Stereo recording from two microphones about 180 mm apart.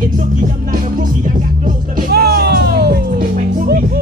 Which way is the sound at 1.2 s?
45° right (ahead or behind).